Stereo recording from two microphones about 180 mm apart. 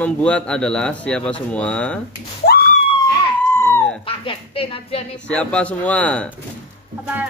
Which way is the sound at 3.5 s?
15° left (ahead or behind).